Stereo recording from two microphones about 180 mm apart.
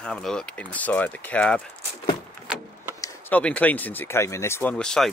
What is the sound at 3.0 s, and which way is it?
Speech, 10° left (ahead or behind).